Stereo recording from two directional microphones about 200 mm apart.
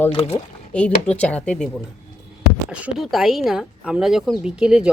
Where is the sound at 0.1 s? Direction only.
30° left (ahead or behind).